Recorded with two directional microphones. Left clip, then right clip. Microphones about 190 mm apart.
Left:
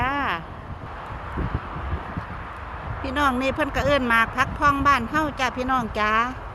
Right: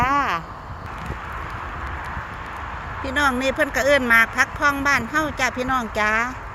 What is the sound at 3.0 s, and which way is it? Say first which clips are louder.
Speech: right 2 dB; 15° left (ahead or behind).